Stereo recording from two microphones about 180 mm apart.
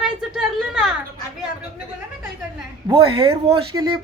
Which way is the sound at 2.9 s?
25° right (ahead or behind).